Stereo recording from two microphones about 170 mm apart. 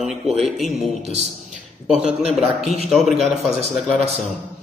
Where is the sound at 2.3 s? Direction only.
Centre (ahead or behind).